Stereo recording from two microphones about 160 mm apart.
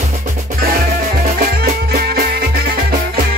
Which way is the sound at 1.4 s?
65° right (ahead or behind).